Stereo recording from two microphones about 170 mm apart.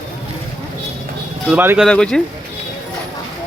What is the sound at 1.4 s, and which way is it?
Speech, 10° right (ahead or behind).